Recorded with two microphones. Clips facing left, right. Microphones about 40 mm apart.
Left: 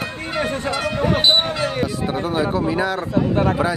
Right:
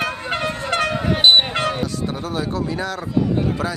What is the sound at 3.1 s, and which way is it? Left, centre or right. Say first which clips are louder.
Speech: left 1 dB; left.